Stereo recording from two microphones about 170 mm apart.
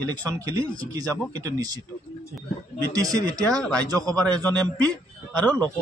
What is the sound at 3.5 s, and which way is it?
A man's voice, 5° left (ahead or behind).